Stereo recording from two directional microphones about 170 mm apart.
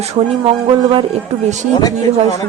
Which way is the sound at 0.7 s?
30° right (ahead or behind).